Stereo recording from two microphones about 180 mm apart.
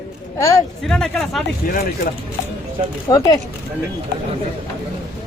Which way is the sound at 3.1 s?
20° left (ahead or behind).